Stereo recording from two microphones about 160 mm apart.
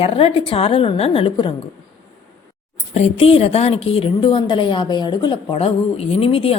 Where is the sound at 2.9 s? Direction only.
40° left (ahead or behind).